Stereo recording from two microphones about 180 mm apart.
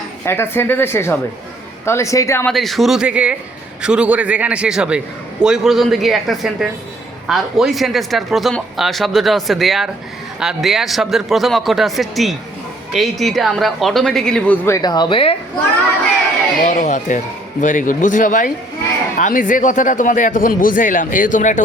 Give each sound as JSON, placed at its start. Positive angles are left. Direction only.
{"t": 0.3, "sound": "speech", "side_deg": 15}
{"t": 2.5, "sound": "speech", "side_deg": 0}
{"t": 14.8, "sound": "a woman's voice", "side_deg": 25}
{"t": 16.6, "sound": "speech", "side_deg": 45}